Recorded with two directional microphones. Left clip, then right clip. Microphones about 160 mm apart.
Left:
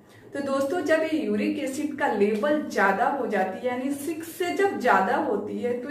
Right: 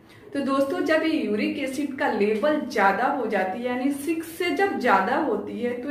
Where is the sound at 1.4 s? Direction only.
20° right (ahead or behind).